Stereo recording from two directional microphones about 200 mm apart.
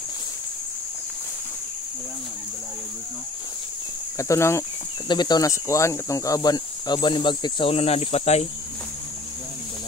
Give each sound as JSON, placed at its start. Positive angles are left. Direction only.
{"t": 4.2, "sound": "speech", "side_deg": 15}